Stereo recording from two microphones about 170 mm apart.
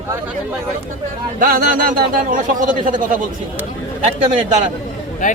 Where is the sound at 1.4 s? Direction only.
55° right (ahead or behind).